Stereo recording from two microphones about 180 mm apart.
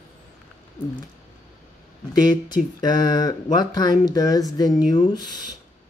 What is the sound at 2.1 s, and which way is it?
Speech, 25° left (ahead or behind).